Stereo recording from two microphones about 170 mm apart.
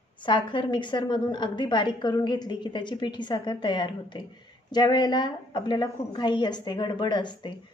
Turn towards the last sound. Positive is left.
turn(degrees=25)  # may be behind; listen again after turning